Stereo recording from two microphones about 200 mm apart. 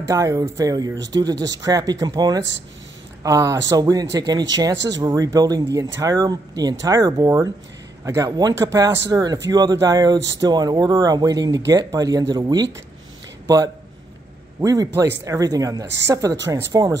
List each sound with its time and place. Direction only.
0.0 s speech: 15° right (ahead or behind)
14.6 s speech: 15° right (ahead or behind)